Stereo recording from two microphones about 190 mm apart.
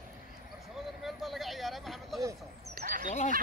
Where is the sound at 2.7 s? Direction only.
45° right (ahead or behind).